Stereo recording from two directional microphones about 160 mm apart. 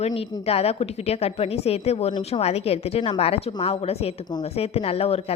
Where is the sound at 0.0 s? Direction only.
40° left (ahead or behind).